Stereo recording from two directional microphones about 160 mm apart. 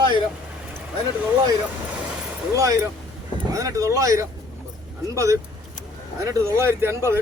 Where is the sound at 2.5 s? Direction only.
20° right (ahead or behind).